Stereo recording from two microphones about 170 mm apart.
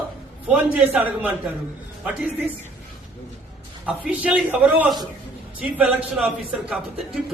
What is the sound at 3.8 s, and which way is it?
A man's voice, 10° right (ahead or behind).